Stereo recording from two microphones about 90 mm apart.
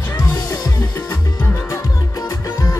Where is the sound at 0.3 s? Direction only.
45° left (ahead or behind).